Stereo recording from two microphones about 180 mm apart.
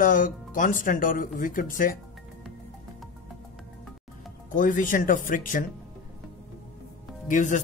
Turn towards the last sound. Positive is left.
turn(degrees=45)  # may be behind; listen again after turning